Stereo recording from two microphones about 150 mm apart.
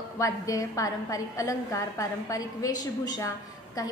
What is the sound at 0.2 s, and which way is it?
A woman's voice, 20° left (ahead or behind).